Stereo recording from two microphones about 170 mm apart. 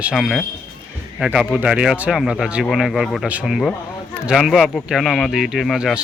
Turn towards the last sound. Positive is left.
turn(degrees=0)  # may be behind; listen again after turning